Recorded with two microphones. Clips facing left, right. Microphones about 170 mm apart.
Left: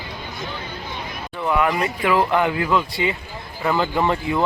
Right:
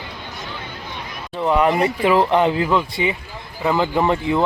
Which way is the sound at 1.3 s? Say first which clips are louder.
Right 4 dB; 30° right (ahead or behind).